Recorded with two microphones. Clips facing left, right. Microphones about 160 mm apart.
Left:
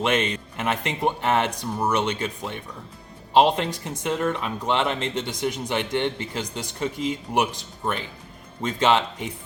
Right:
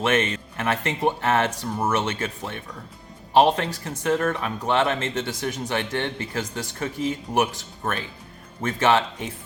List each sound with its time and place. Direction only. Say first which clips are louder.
0.0 s speech: right 1 dB; 15° left (ahead or behind)